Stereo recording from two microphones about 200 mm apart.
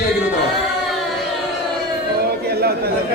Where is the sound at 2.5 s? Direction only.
50° right (ahead or behind).